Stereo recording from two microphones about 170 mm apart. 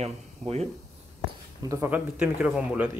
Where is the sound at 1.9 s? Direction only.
5° right (ahead or behind).